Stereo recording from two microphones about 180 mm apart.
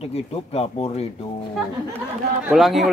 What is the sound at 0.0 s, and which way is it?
Speech, 35° left (ahead or behind).